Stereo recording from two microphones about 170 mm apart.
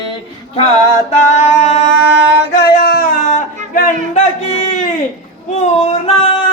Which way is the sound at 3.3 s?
45° left (ahead or behind).